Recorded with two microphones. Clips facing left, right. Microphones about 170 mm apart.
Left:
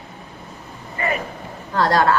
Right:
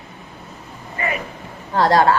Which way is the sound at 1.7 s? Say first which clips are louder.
Right 2 dB; 25° right (ahead or behind).